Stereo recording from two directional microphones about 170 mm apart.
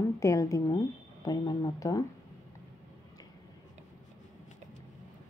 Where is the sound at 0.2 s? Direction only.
20° left (ahead or behind).